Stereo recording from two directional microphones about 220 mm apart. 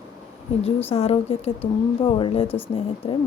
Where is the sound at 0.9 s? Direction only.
25° left (ahead or behind).